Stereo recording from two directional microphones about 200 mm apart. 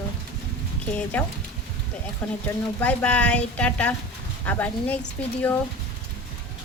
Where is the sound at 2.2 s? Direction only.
5° left (ahead or behind).